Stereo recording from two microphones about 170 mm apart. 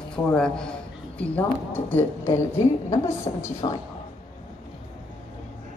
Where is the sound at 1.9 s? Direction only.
10° left (ahead or behind).